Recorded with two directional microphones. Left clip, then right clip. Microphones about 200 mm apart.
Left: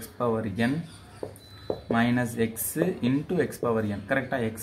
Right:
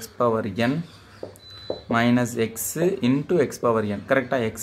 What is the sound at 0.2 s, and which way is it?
Speech, 40° right (ahead or behind).